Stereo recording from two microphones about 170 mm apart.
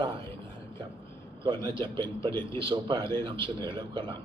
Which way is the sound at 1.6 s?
30° right (ahead or behind).